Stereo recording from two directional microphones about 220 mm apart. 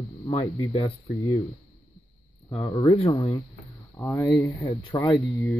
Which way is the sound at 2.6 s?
15° left (ahead or behind).